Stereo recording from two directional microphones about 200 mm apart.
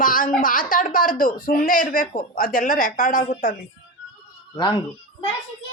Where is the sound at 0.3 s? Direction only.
45° left (ahead or behind).